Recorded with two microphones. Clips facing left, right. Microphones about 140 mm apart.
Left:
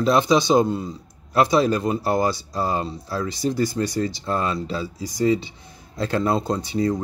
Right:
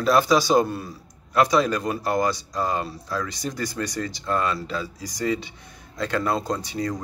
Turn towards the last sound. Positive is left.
turn(degrees=30)  # may be behind; listen again after turning